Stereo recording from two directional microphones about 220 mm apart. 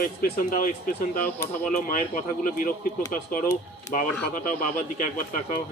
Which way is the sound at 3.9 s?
35° left (ahead or behind).